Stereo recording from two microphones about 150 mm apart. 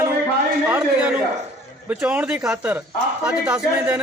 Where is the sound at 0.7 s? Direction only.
10° right (ahead or behind).